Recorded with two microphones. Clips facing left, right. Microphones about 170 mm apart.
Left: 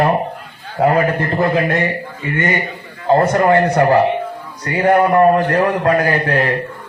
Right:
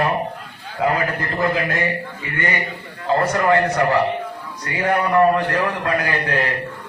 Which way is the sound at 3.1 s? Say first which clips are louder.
Left 5 dB; 30° left (ahead or behind).